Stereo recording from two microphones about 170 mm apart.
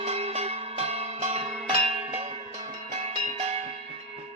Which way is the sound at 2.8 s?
40° right (ahead or behind).